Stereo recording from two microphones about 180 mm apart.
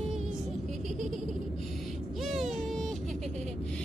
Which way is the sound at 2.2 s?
Centre (ahead or behind).